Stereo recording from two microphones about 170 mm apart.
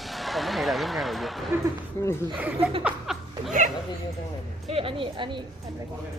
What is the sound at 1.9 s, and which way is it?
Speech, 15° left (ahead or behind).